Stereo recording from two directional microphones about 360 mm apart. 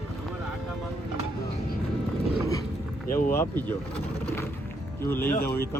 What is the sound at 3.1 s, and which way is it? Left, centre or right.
Speech, left.